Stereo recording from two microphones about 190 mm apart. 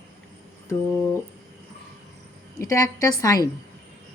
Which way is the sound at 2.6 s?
15° left (ahead or behind).